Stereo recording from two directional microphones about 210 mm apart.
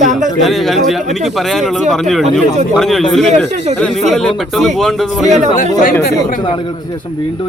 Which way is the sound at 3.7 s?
5° left (ahead or behind).